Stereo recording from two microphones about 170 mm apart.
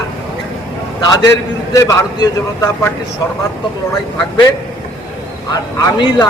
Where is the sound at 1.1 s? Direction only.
20° left (ahead or behind).